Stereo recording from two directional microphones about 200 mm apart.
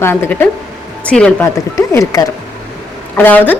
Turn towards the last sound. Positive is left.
turn(degrees=10)  # may be behind; listen again after turning